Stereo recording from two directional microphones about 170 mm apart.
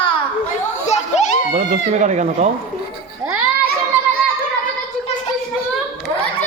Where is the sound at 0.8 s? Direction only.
40° left (ahead or behind).